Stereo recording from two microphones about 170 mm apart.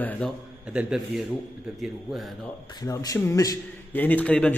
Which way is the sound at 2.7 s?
20° left (ahead or behind).